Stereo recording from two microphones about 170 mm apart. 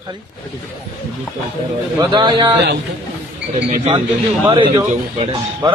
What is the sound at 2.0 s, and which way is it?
Speech, 25° right (ahead or behind).